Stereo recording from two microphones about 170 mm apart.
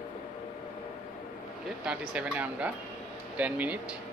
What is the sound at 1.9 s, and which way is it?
Speech, 5° right (ahead or behind).